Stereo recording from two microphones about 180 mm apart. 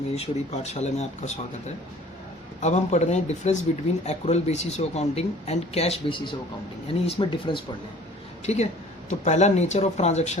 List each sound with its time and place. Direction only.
0.2 s speech: 35° left (ahead or behind)
8.5 s speech: 40° left (ahead or behind)